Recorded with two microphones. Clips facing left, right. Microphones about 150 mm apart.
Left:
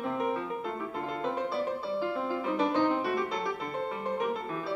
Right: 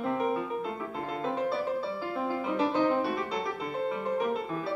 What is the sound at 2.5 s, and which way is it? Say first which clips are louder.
Music: even; 5° right (ahead or behind).